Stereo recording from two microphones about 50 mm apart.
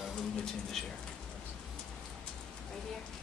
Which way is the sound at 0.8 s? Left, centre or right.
Centre.